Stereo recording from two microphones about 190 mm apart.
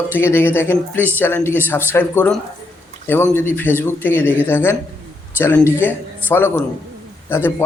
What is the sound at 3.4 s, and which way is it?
Speech, 10° left (ahead or behind).